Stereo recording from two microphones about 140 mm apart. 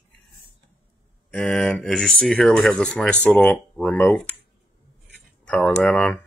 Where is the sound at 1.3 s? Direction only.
5° left (ahead or behind).